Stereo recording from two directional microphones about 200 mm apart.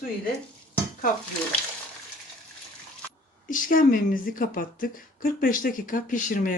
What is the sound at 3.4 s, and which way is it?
A woman's voice, 45° left (ahead or behind).